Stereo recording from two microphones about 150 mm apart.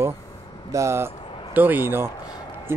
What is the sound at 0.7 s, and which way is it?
Speech, 20° right (ahead or behind).